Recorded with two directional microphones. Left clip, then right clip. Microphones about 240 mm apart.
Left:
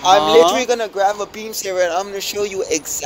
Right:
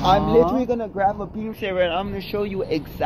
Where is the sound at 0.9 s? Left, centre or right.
Left.